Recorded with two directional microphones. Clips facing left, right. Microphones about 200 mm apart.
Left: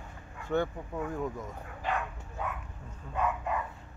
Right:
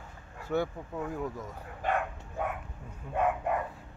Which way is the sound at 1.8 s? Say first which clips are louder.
Right 3 dB; 50° right (ahead or behind).